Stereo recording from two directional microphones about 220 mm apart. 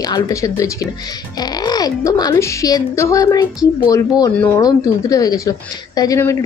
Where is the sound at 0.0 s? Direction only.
15° left (ahead or behind).